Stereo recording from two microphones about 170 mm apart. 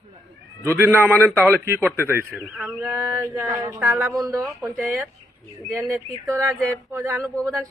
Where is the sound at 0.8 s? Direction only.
10° right (ahead or behind).